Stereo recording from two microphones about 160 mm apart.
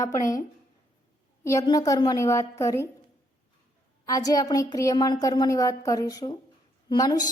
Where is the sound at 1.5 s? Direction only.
20° left (ahead or behind).